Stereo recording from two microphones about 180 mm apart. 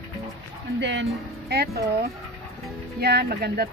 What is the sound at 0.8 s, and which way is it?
Speech, 85° right.